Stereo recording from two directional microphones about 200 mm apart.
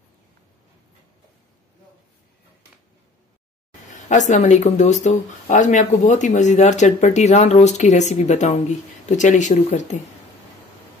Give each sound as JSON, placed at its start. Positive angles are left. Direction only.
{"t": 4.1, "sound": "speech", "side_deg": 40}